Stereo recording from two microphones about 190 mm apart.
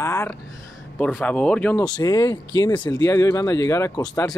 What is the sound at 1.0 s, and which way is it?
Speech, 5° left (ahead or behind).